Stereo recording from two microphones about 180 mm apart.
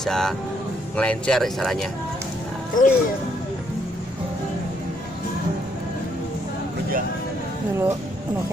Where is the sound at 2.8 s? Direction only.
50° left (ahead or behind).